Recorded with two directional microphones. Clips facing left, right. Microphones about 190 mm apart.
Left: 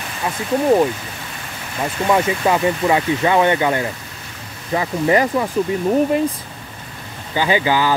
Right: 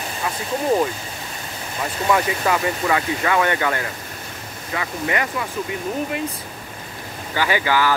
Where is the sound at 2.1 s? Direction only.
25° left (ahead or behind).